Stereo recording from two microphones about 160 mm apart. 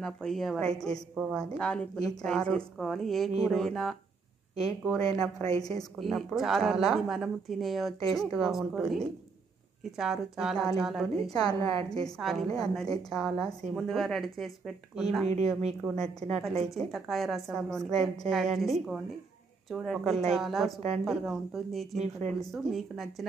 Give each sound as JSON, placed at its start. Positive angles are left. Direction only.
{"t": 0.0, "sound": "speech", "side_deg": 5}
{"t": 5.5, "sound": "a woman's voice", "side_deg": 25}
{"t": 5.9, "sound": "speech", "side_deg": 0}
{"t": 11.4, "sound": "a woman's voice", "side_deg": 25}
{"t": 12.0, "sound": "speech", "side_deg": 0}
{"t": 15.2, "sound": "speech", "side_deg": -45}
{"t": 15.8, "sound": "speech", "side_deg": 5}
{"t": 21.9, "sound": "speech", "side_deg": -45}
{"t": 22.5, "sound": "speech", "side_deg": 0}